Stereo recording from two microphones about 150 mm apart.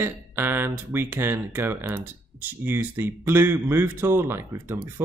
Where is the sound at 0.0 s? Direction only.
15° right (ahead or behind).